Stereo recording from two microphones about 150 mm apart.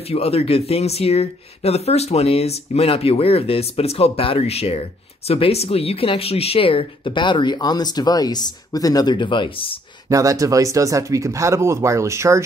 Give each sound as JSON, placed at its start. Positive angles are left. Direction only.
{"t": 0.1, "sound": "speech", "side_deg": 40}
{"t": 10.0, "sound": "speech", "side_deg": -20}